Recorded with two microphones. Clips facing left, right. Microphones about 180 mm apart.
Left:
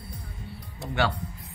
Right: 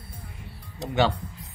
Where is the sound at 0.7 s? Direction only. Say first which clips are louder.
Right 4 dB; 20° right (ahead or behind).